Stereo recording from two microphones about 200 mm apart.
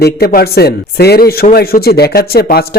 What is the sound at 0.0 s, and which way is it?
Speech, 50° left (ahead or behind).